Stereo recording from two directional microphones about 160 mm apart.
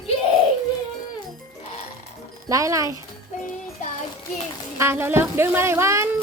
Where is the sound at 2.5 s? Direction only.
20° right (ahead or behind).